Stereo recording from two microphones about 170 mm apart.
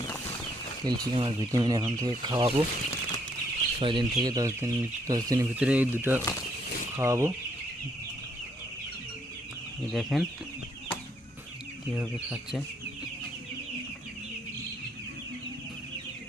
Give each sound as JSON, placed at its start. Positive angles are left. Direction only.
{"t": 0.9, "sound": "speech", "side_deg": -30}
{"t": 3.8, "sound": "speech", "side_deg": -30}
{"t": 5.5, "sound": "speech", "side_deg": -10}
{"t": 9.9, "sound": "speech", "side_deg": 0}